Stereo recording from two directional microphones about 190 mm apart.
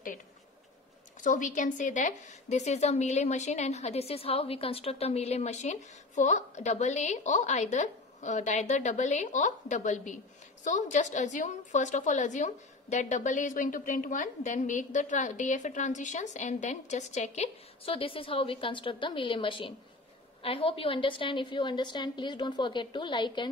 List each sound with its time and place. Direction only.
1.2 s a woman's voice: 45° left (ahead or behind); by 23.5 s 25° left (ahead or behind)